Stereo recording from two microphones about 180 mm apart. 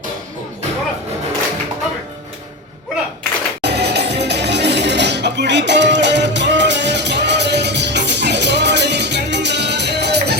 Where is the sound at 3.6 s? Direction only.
65° right (ahead or behind).